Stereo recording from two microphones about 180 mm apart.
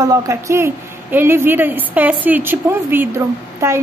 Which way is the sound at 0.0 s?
20° right (ahead or behind).